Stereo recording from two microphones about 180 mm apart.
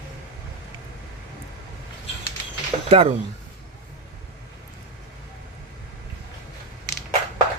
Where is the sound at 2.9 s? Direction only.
35° right (ahead or behind).